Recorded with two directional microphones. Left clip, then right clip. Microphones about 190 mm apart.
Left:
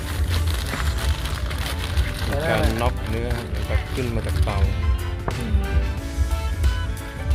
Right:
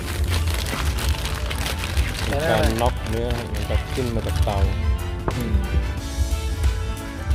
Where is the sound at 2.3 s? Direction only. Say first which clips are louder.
Right 2 dB; 15° right (ahead or behind).